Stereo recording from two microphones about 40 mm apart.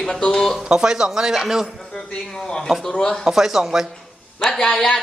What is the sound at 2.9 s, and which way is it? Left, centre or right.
Speech, left.